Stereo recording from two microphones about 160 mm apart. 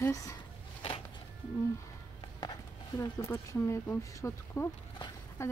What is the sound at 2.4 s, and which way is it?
Speech, 20° left (ahead or behind).